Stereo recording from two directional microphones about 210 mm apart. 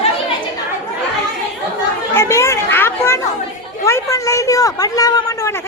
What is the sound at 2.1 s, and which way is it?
Chatter, 15° left (ahead or behind).